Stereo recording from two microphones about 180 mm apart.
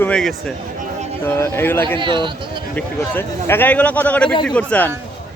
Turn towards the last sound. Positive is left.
turn(degrees=10)  # may be behind; listen again after turning